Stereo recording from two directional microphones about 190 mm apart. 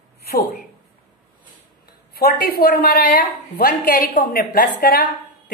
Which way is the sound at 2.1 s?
55° left (ahead or behind).